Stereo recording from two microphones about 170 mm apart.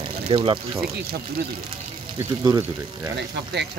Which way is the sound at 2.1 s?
20° right (ahead or behind).